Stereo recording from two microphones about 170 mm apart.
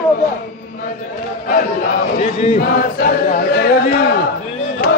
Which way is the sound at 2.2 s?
40° left (ahead or behind).